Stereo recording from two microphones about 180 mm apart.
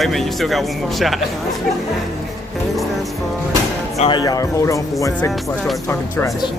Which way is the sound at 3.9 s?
35° left (ahead or behind).